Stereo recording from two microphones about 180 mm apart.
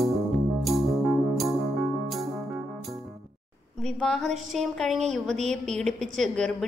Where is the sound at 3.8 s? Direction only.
5° left (ahead or behind).